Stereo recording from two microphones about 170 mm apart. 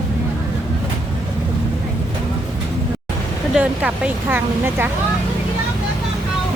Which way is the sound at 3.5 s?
10° right (ahead or behind).